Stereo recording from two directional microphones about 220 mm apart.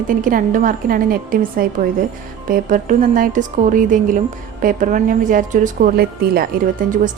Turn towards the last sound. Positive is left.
turn(degrees=-35)  # may be behind; listen again after turning